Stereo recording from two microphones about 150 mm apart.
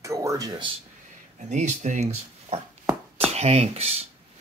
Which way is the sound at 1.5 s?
55° right (ahead or behind).